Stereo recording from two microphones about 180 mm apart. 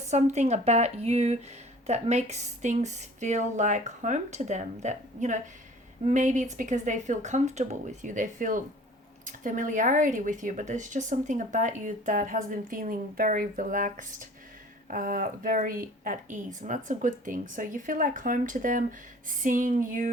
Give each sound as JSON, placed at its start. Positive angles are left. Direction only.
{"t": 0.1, "sound": "a woman's voice", "side_deg": -40}